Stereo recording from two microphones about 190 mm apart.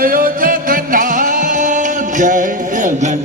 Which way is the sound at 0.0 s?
50° right (ahead or behind).